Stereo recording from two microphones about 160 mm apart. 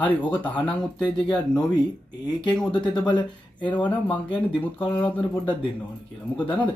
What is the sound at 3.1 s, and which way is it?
Speech, 30° left (ahead or behind).